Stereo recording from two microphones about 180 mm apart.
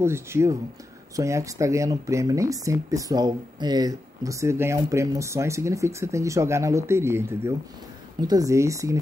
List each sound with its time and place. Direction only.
0.0 s speech: 15° right (ahead or behind)